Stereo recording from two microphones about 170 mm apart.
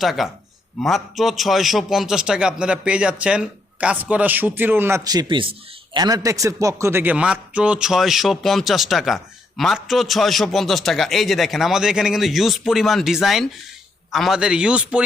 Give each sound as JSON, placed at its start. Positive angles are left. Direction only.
{"t": 0.0, "sound": "a man's voice", "side_deg": 0}